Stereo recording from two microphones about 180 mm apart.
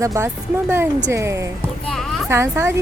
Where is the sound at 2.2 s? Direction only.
15° right (ahead or behind).